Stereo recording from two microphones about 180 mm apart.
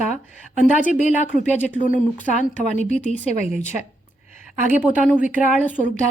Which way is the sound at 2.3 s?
45° left (ahead or behind).